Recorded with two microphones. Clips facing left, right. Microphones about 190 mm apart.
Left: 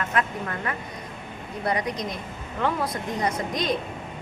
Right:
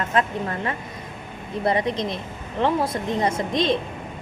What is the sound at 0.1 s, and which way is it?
Speech, 30° right (ahead or behind).